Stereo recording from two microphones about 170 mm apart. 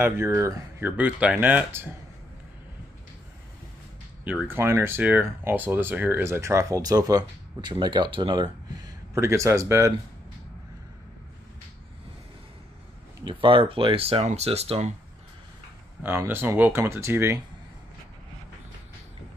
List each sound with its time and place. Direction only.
0.0 s speech: 15° right (ahead or behind)
4.2 s speech: 10° right (ahead or behind)
13.2 s speech: 30° right (ahead or behind)
16.0 s speech: 15° right (ahead or behind)